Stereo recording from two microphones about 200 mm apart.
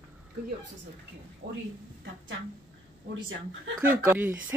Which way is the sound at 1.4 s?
35° right (ahead or behind).